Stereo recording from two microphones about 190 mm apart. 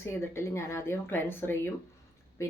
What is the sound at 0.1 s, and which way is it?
Speech, 15° left (ahead or behind).